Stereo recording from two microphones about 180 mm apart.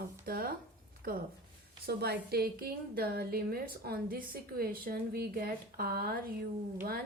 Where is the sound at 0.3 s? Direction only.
55° right (ahead or behind).